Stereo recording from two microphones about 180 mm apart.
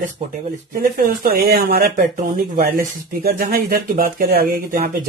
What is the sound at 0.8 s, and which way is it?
Speech, 55° right (ahead or behind).